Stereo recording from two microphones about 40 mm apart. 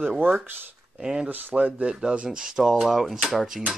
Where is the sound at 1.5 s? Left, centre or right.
Right.